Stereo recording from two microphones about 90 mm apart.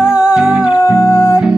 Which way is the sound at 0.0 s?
40° left (ahead or behind).